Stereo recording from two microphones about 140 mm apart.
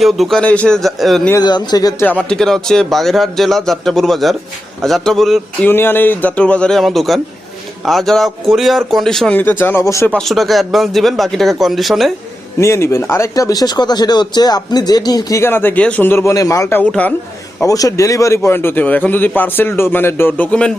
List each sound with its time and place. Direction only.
0.0 s a man's voice: centre (ahead or behind)
1.4 s speech: 30° left (ahead or behind)
2.0 s a man's voice: 10° left (ahead or behind)
5.6 s a man's voice: 15° left (ahead or behind)
10.1 s a man's voice: 5° left (ahead or behind)
12.5 s speech: 20° left (ahead or behind)
17.6 s speech: 25° left (ahead or behind); by 20.7 s 10° left (ahead or behind)